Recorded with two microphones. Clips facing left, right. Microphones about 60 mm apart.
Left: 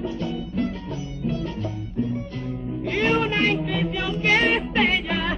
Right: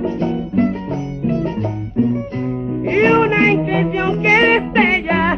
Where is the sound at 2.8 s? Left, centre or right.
Right.